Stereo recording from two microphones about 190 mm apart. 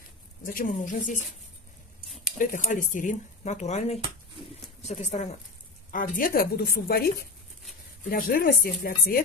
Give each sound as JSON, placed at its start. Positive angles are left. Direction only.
{"t": 0.5, "sound": "a woman's voice", "side_deg": 45}
{"t": 2.0, "sound": "a sound", "side_deg": 0}
{"t": 2.3, "sound": "a woman's voice", "side_deg": 45}